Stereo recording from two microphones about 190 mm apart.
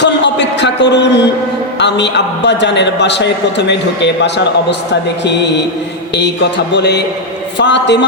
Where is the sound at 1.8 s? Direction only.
65° left (ahead or behind).